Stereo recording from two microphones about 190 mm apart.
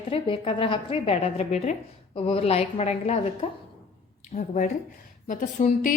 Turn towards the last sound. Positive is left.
turn(degrees=40)  # may be behind; listen again after turning